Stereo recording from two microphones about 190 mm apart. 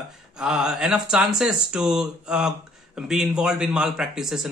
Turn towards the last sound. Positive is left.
turn(degrees=-5)  # may be behind; listen again after turning